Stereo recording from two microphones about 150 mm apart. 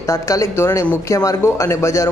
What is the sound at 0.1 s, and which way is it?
Speech, 20° left (ahead or behind).